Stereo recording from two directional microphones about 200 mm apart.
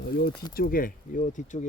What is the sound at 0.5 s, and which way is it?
Speech, 45° left (ahead or behind).